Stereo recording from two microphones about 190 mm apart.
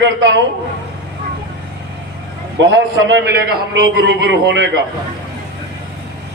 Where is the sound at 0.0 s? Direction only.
70° right (ahead or behind).